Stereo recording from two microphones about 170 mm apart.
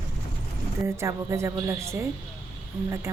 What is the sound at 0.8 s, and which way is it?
A woman's voice, 15° right (ahead or behind).